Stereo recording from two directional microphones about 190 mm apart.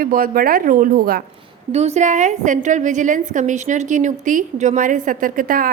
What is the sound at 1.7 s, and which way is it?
A woman's voice, 35° right (ahead or behind).